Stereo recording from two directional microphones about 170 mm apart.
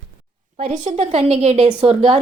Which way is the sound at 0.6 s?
40° right (ahead or behind).